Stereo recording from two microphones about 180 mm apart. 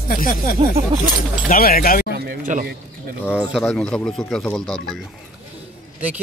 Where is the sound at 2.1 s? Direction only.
60° right (ahead or behind).